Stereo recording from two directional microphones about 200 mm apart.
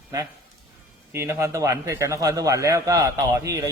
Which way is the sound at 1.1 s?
15° right (ahead or behind).